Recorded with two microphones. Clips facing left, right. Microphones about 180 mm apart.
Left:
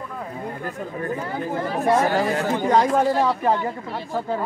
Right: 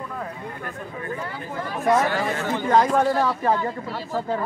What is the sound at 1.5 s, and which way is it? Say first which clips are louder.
Speech: left 1 dB; 35° left (ahead or behind).